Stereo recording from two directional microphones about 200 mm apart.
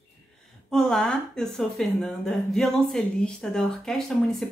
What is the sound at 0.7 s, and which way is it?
Speech, 5° left (ahead or behind).